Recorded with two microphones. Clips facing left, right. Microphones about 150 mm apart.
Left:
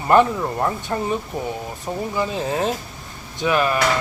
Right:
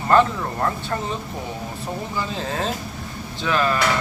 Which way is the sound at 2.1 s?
15° left (ahead or behind).